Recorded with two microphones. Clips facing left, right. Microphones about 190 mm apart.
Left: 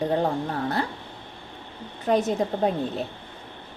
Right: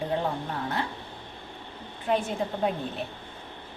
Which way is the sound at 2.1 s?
40° left (ahead or behind).